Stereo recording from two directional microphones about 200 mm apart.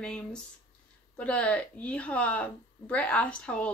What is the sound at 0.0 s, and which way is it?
A woman's voice, 5° left (ahead or behind).